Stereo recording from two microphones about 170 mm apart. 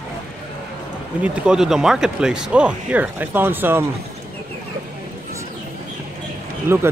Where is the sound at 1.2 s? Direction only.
5° right (ahead or behind).